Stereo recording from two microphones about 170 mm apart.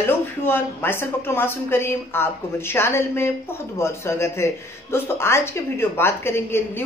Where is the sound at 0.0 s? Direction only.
15° left (ahead or behind).